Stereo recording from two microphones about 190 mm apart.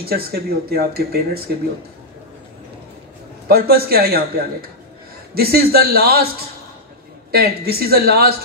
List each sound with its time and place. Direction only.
0.0 s speech: 55° right (ahead or behind)
3.4 s a man's voice: 55° right (ahead or behind)
7.2 s speech: 55° right (ahead or behind)